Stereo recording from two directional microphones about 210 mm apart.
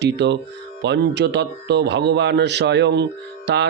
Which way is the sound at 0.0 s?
55° right (ahead or behind).